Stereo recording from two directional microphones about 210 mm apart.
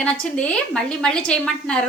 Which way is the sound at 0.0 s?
5° left (ahead or behind).